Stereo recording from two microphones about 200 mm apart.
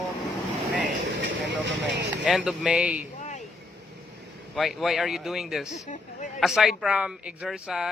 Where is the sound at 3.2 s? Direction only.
35° left (ahead or behind).